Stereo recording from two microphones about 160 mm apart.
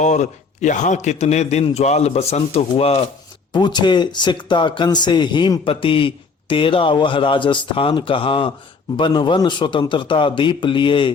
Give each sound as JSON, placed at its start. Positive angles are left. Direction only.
{"t": 0.0, "sound": "a man's voice", "side_deg": 50}
{"t": 3.5, "sound": "speech", "side_deg": 25}